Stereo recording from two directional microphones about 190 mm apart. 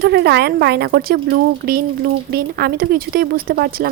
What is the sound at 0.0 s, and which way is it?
A woman's voice, 60° right (ahead or behind).